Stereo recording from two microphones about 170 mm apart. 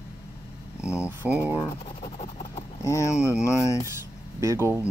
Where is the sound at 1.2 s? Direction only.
10° right (ahead or behind).